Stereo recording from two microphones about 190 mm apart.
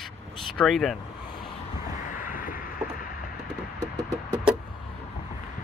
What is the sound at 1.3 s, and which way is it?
Vehicle, 25° left (ahead or behind).